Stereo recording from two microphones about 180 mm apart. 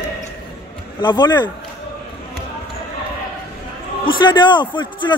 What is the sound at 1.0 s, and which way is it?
Speech, 25° left (ahead or behind).